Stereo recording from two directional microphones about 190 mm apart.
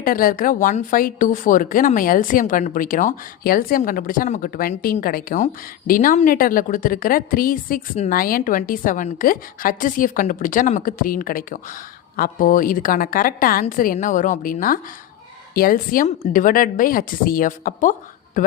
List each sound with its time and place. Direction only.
0.0 s a woman's voice: 45° left (ahead or behind)